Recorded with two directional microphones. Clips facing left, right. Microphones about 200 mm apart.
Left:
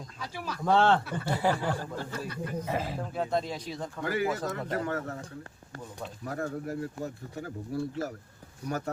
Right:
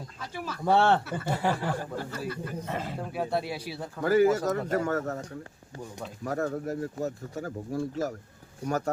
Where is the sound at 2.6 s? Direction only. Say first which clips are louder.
Left 2 dB; 5° left (ahead or behind).